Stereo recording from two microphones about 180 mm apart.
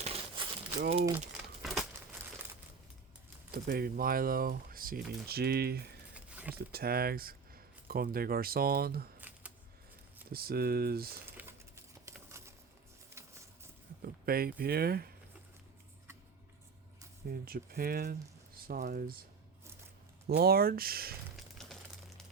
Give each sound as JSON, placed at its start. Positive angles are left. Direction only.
{"t": 0.0, "sound": "crumpling", "side_deg": -35}
{"t": 1.6, "sound": "crumpling", "side_deg": 0}
{"t": 3.5, "sound": "speech", "side_deg": -55}
{"t": 6.1, "sound": "a sound", "side_deg": -5}
{"t": 6.5, "sound": "speech", "side_deg": -60}
{"t": 9.3, "sound": "a sound", "side_deg": -10}
{"t": 10.2, "sound": "speech", "side_deg": -55}
{"t": 12.4, "sound": "a sound", "side_deg": -15}
{"t": 14.0, "sound": "speech", "side_deg": -55}
{"t": 17.2, "sound": "speech", "side_deg": -55}
{"t": 20.2, "sound": "speech", "side_deg": -60}
{"t": 21.3, "sound": "a sound", "side_deg": 0}